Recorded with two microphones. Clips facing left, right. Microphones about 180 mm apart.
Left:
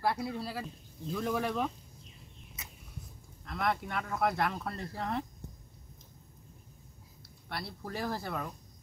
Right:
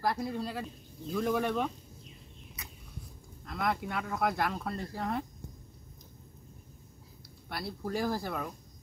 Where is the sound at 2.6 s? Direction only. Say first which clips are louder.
Right 1 dB; 25° left (ahead or behind).